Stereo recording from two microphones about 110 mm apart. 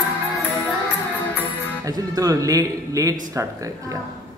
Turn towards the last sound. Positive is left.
turn(degrees=-30)  # may be behind; listen again after turning